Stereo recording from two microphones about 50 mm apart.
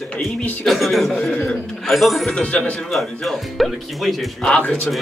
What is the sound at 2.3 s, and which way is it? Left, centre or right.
Speech, left.